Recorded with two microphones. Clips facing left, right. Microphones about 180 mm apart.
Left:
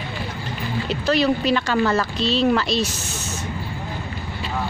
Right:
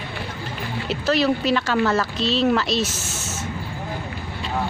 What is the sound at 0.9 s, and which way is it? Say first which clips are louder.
Speech: even; 5° right (ahead or behind).